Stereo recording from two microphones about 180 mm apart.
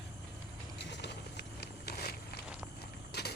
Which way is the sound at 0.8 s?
70° left (ahead or behind).